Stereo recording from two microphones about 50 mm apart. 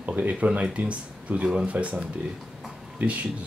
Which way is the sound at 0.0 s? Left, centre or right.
Right.